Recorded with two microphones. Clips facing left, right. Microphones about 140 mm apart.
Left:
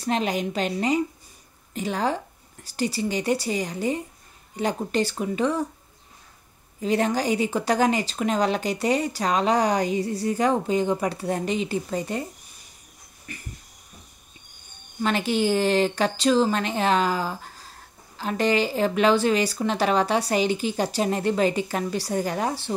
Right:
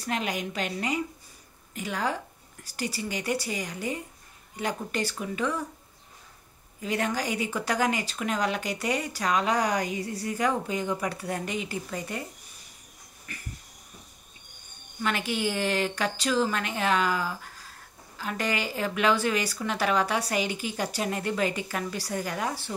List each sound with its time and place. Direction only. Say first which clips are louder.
0.0 s speech: left 6 dB; 30° left (ahead or behind)
6.8 s speech: left 6 dB; 30° left (ahead or behind)
15.0 s speech: left 6 dB; 30° left (ahead or behind)